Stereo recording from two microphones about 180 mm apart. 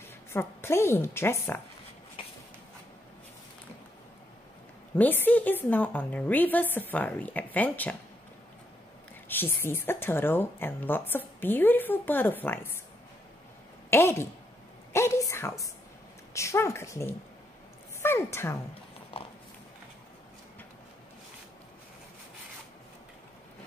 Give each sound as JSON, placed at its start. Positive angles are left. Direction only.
{"t": 0.3, "sound": "speech", "side_deg": 15}
{"t": 4.9, "sound": "speech", "side_deg": 10}
{"t": 9.3, "sound": "speech", "side_deg": 10}
{"t": 13.8, "sound": "a woman's voice", "side_deg": 15}